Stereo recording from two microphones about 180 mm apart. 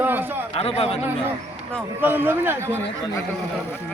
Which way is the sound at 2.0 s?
10° right (ahead or behind).